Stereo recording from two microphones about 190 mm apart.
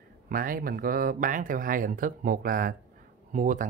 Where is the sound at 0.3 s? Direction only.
50° right (ahead or behind).